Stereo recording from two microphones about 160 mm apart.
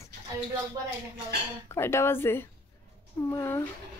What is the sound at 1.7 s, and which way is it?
Speech, 15° left (ahead or behind).